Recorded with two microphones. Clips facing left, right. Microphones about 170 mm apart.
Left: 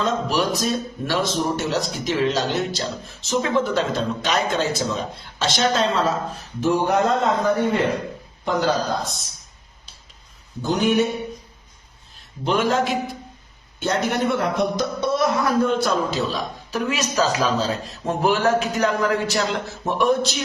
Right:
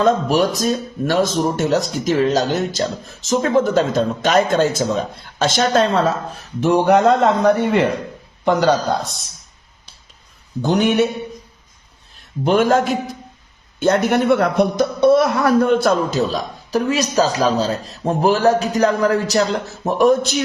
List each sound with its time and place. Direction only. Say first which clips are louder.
0.0 s a man's voice: right 6 dB; 50° right (ahead or behind)
6.6 s a man's voice: right 5 dB; 75° right (ahead or behind)
10.6 s a man's voice: right 4 dB; 65° right (ahead or behind)
12.5 s a man's voice: right 5 dB; 50° right (ahead or behind)
13.7 s a man's voice: right 7 dB; 55° right (ahead or behind)